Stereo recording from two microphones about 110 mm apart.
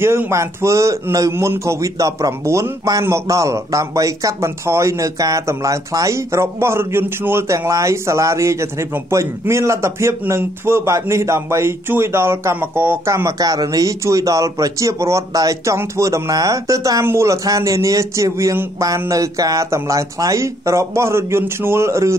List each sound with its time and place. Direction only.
0.0 s a man's voice: 25° right (ahead or behind)